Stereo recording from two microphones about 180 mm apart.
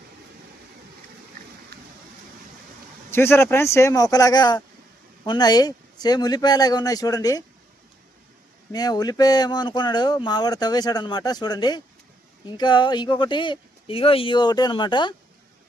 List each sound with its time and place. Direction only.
1.7 s rain: 60° right (ahead or behind)
3.1 s speech: 15° left (ahead or behind)
8.7 s speech: 20° left (ahead or behind)